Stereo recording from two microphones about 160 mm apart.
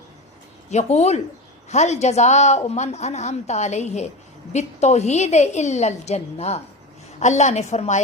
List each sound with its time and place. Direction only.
0.7 s a woman's voice: 45° left (ahead or behind)